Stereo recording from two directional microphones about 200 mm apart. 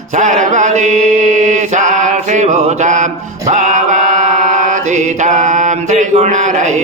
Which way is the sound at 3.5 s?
40° right (ahead or behind).